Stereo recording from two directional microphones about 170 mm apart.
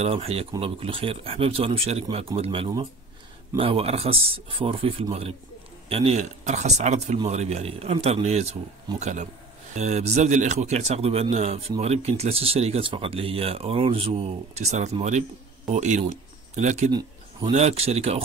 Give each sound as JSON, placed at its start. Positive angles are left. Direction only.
{"t": 0.0, "sound": "speech", "side_deg": -35}